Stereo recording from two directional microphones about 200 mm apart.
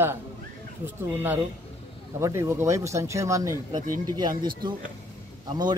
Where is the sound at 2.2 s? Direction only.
15° right (ahead or behind).